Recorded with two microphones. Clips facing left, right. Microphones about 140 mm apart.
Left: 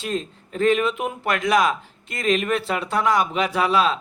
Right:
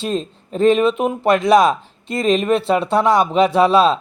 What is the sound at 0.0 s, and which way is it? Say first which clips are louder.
Speech: right 5 dB; 25° right (ahead or behind).